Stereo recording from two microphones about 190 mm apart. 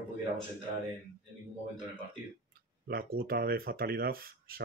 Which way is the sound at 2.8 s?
50° right (ahead or behind).